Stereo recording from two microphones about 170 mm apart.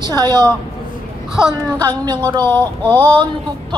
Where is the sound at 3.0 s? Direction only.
25° right (ahead or behind).